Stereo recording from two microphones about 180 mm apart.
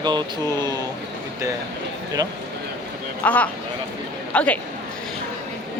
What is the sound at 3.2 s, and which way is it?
A woman's voice, 10° left (ahead or behind).